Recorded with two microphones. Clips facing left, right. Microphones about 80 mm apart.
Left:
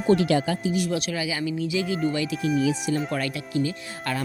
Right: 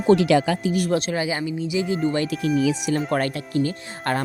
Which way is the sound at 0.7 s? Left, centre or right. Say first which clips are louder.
Right 2 dB; right.